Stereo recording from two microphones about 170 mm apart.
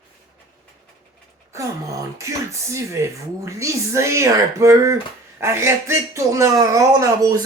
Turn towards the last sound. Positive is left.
turn(degrees=-20)  # may be behind; listen again after turning